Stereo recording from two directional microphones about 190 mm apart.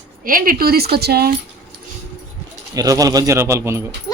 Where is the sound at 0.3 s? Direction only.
45° right (ahead or behind).